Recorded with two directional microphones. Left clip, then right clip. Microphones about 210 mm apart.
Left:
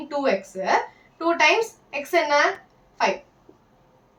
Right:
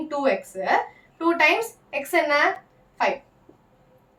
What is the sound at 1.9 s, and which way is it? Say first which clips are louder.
Speech: even; 15° right (ahead or behind).